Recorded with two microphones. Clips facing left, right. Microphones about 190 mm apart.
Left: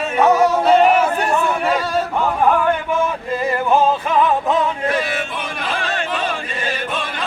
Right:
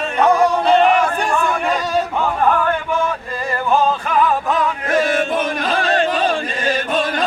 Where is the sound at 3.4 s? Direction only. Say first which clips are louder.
Left 1 dB; 20° left (ahead or behind).